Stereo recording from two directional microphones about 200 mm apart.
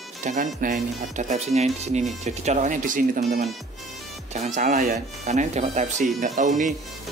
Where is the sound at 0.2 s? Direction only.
40° right (ahead or behind).